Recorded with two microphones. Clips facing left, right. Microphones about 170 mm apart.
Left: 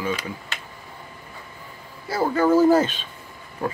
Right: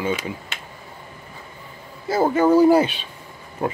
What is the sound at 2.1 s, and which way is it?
Speech, 20° right (ahead or behind).